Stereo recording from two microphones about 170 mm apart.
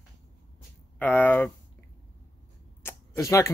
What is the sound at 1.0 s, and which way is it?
Speech, 10° left (ahead or behind).